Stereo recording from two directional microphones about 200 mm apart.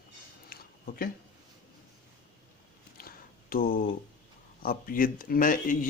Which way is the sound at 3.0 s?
45° left (ahead or behind).